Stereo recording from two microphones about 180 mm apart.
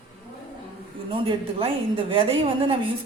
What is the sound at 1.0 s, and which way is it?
A woman's voice, 30° right (ahead or behind).